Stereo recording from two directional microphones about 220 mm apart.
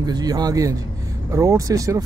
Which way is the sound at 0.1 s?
20° right (ahead or behind).